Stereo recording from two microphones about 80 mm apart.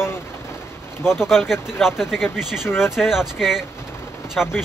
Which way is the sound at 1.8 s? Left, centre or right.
Centre.